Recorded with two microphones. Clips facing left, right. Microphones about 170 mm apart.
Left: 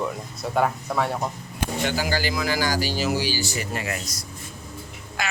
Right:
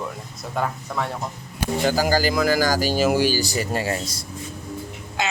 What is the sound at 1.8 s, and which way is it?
A man's voice, 40° right (ahead or behind).